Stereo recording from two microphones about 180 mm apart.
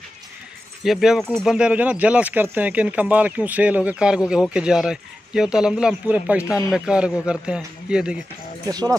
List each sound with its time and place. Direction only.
0.8 s speech: centre (ahead or behind)
8.6 s speech: 20° right (ahead or behind)